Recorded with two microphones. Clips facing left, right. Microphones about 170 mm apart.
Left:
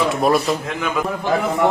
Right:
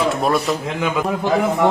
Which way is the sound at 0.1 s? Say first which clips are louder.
Left 1 dB; centre (ahead or behind).